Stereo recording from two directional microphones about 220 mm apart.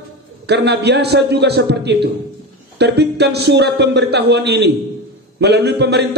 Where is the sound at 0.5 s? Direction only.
50° right (ahead or behind).